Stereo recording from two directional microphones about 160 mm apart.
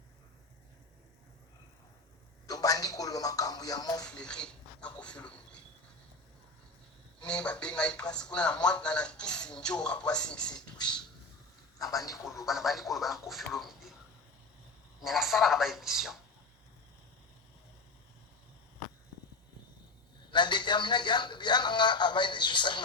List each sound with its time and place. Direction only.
2.5 s a sound: 25° left (ahead or behind)
4.0 s speech: 5° left (ahead or behind)
7.2 s speech: 5° left (ahead or behind)
11.8 s speech: 20° left (ahead or behind)
12.5 s speech: centre (ahead or behind)
15.0 s speech: centre (ahead or behind)
20.3 s speech: 30° left (ahead or behind)